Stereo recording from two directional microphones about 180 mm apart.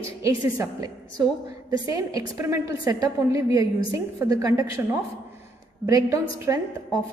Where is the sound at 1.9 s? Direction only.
20° right (ahead or behind).